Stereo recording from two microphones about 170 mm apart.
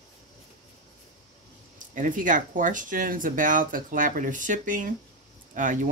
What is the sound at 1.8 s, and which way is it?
Speech, 50° right (ahead or behind).